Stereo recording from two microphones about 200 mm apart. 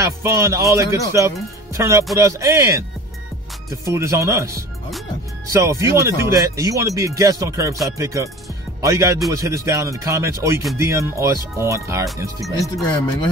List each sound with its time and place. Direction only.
0.0 s speech: 15° right (ahead or behind)
3.8 s speech: 15° right (ahead or behind)